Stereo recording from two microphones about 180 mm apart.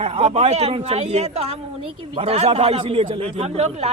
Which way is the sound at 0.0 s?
35° right (ahead or behind).